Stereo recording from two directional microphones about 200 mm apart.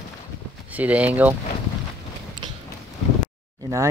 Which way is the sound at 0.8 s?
5° right (ahead or behind).